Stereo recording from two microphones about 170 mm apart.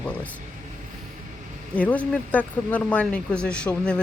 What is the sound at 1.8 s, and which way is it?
Speech, 10° left (ahead or behind).